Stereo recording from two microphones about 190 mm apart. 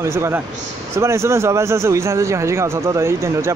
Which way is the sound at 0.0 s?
15° right (ahead or behind).